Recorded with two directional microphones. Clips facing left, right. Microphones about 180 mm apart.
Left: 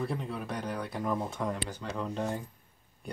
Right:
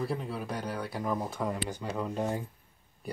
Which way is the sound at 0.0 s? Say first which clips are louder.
Right 1 dB; centre (ahead or behind).